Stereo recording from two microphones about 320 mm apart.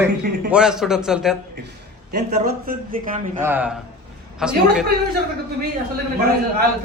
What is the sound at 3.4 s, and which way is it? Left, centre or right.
A man's voice, centre.